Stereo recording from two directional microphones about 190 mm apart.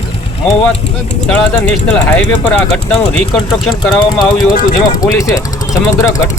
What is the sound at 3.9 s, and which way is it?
Speech, 20° left (ahead or behind).